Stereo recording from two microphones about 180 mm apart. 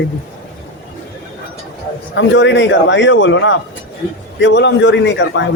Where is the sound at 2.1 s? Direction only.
90° left.